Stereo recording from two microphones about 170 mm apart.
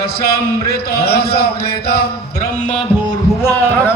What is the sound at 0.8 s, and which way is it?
Speech, 65° left (ahead or behind).